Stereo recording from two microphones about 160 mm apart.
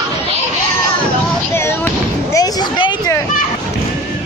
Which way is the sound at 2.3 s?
20° left (ahead or behind).